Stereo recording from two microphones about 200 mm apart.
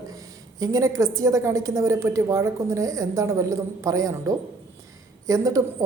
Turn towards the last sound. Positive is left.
turn(degrees=-15)  # may be behind; listen again after turning